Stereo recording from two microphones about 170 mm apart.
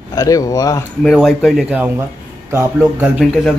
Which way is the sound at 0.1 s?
20° left (ahead or behind).